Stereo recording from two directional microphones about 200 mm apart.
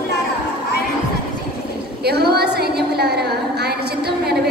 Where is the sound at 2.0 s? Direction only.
50° right (ahead or behind).